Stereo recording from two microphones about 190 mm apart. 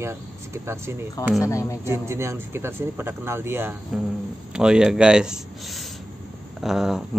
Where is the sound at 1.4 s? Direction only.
15° left (ahead or behind).